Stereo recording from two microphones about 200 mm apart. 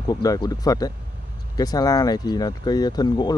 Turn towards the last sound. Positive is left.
turn(degrees=20)  # may be behind; listen again after turning